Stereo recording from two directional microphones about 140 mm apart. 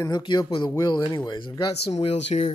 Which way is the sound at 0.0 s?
35° left (ahead or behind).